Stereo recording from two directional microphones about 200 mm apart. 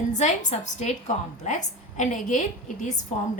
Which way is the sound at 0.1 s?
35° left (ahead or behind).